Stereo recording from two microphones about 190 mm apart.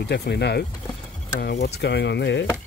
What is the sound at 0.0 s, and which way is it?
Speech, 60° left (ahead or behind).